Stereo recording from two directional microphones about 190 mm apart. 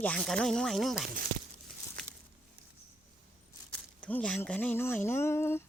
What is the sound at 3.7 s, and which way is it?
Speech, 5° left (ahead or behind).